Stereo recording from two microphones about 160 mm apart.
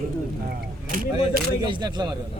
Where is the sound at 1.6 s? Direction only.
30° right (ahead or behind).